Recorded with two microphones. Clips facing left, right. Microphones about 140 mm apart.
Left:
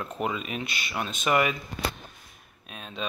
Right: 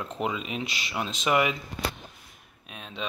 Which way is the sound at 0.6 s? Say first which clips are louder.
Left 1 dB; 90° right.